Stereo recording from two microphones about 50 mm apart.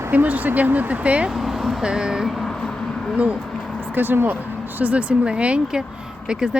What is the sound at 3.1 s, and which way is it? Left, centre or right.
Speech, right.